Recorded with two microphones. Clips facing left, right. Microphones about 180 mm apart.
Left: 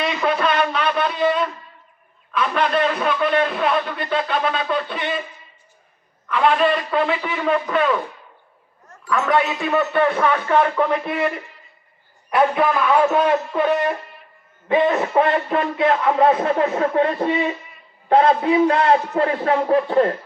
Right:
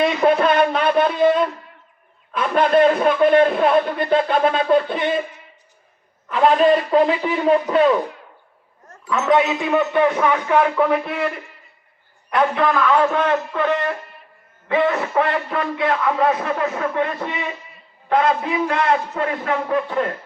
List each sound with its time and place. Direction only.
0.2 s a man's voice: 30° right (ahead or behind)
0.9 s a man's voice: 50° right (ahead or behind)
2.3 s a man's voice: 50° right (ahead or behind)
6.3 s a man's voice: 40° right (ahead or behind)
9.0 s a man's voice: 20° right (ahead or behind); by 11.3 s centre (ahead or behind)
12.3 s a man's voice: 10° left (ahead or behind); by 20.1 s 35° left (ahead or behind)